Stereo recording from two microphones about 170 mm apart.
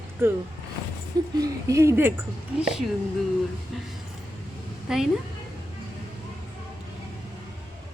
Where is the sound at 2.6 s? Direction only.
5° right (ahead or behind).